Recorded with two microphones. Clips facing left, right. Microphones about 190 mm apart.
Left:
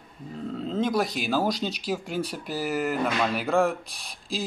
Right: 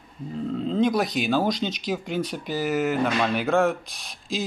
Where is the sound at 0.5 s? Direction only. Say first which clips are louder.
Right 3 dB; 5° left (ahead or behind).